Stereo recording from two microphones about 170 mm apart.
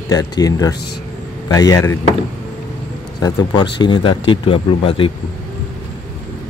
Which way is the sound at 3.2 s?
20° left (ahead or behind).